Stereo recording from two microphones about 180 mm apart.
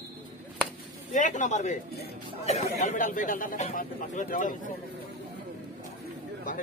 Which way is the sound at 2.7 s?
45° left (ahead or behind).